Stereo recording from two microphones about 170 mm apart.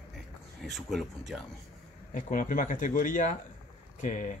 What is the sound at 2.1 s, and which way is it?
Speech, 50° left (ahead or behind).